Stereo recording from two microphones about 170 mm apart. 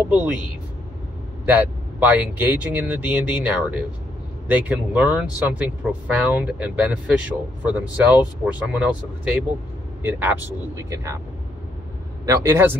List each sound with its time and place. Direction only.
0.0 s speech: 5° right (ahead or behind)
1.4 s speech: 10° right (ahead or behind)
10.0 s speech: 10° right (ahead or behind)
12.3 s speech: 15° right (ahead or behind)